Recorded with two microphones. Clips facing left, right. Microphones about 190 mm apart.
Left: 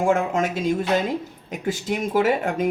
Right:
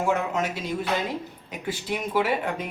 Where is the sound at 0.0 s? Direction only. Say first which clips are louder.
Left 5 dB; 50° left (ahead or behind).